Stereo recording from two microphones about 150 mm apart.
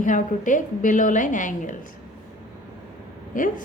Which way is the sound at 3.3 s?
65° left (ahead or behind).